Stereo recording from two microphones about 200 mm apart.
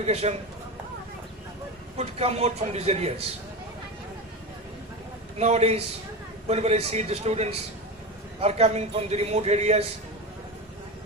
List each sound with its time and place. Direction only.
0.0 s a man's voice: 30° right (ahead or behind)
2.0 s a man's voice: 30° right (ahead or behind)
5.4 s a man's voice: 30° right (ahead or behind)